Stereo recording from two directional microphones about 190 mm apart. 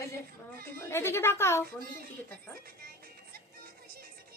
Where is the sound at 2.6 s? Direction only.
50° right (ahead or behind).